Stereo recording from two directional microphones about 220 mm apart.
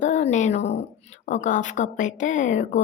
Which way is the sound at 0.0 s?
35° left (ahead or behind).